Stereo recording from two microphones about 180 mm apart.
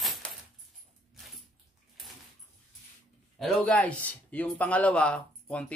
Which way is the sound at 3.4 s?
5° left (ahead or behind).